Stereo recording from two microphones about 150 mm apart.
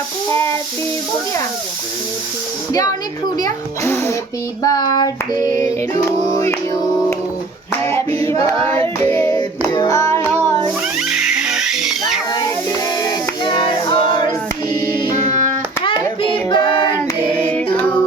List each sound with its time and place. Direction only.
0.3 s stir: 20° left (ahead or behind)
3.3 s speech: 20° left (ahead or behind)
4.6 s female singing: 25° left (ahead or behind)
8.3 s female singing: 20° left (ahead or behind)
8.8 s singing: 15° left (ahead or behind)
9.7 s music: 20° left (ahead or behind)
11.1 s music: 5° right (ahead or behind)
13.0 s music: 25° left (ahead or behind)
15.8 s hands: 35° left (ahead or behind)
17.2 s female singing: 10° left (ahead or behind)
17.7 s music: 10° left (ahead or behind)